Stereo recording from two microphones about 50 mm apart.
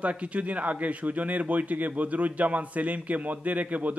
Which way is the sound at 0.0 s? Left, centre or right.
Right.